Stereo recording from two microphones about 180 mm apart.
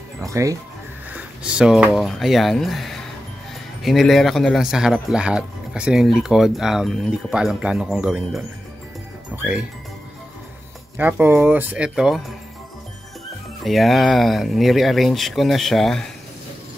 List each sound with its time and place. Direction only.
0.2 s speech: 20° right (ahead or behind)
1.1 s speech: 5° right (ahead or behind)
11.0 s speech: 10° right (ahead or behind)
13.7 s speech: centre (ahead or behind)